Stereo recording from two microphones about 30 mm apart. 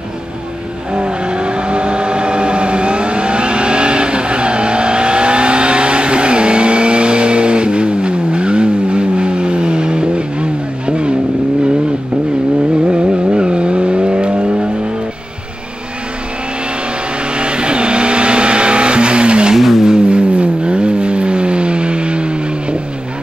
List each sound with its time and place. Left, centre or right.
0.9 s vehicle: right
12.8 s vehicle: right
17.3 s vehicle: right
19.5 s vehicle: centre
19.8 s vehicle: right